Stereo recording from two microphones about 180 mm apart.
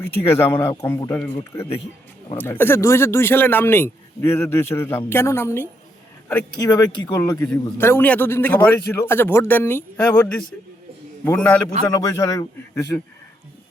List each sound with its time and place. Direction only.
0.3 s speech: 15° left (ahead or behind)
11.3 s speech: 10° left (ahead or behind)